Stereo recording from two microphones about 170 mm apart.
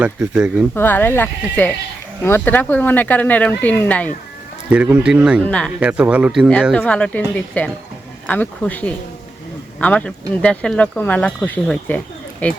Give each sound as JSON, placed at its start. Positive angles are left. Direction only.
{"t": 0.0, "sound": "speech", "side_deg": -15}
{"t": 0.7, "sound": "speech", "side_deg": 10}
{"t": 4.7, "sound": "speech", "side_deg": -5}
{"t": 5.4, "sound": "speech", "side_deg": 5}
{"t": 5.8, "sound": "speech", "side_deg": -5}
{"t": 6.7, "sound": "speech", "side_deg": 10}